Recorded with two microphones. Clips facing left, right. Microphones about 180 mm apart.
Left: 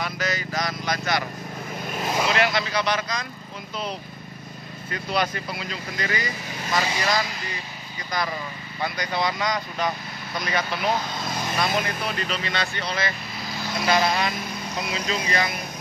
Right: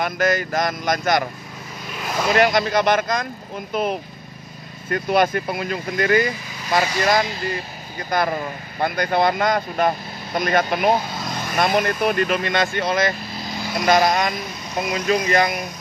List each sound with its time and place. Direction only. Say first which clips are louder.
0.0 s speech: right 8 dB; 50° right (ahead or behind)
2.3 s speech: right 6 dB; 45° right (ahead or behind)